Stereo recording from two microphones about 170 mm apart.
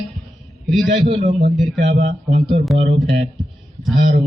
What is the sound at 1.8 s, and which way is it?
Speech, 45° right (ahead or behind).